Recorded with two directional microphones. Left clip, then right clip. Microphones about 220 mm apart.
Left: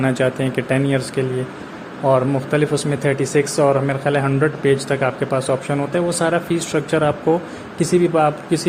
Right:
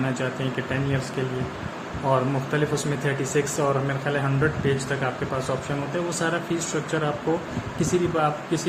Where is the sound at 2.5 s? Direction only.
30° left (ahead or behind).